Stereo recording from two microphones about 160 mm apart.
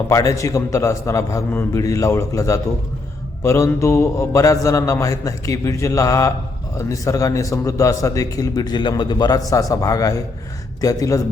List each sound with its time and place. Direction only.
0.1 s a man's voice: 20° left (ahead or behind)